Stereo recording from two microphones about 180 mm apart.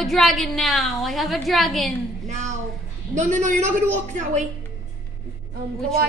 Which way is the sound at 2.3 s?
40° right (ahead or behind).